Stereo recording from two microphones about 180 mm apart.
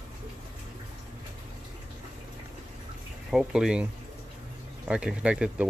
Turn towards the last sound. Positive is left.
turn(degrees=-5)  # may be behind; listen again after turning